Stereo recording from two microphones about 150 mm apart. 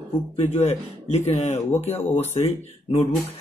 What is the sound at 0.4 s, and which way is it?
Speech, 45° left (ahead or behind).